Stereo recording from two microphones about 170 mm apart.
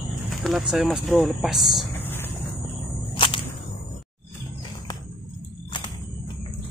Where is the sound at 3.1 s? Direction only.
30° left (ahead or behind).